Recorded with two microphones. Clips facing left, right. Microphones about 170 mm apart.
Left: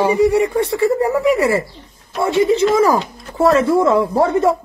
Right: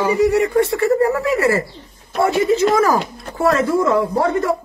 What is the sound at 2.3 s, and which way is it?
Speech, 25° left (ahead or behind).